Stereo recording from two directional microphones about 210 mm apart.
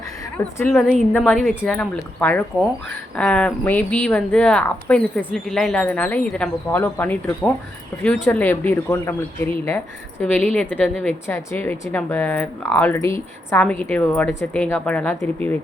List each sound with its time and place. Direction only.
0.6 s speech: 5° left (ahead or behind)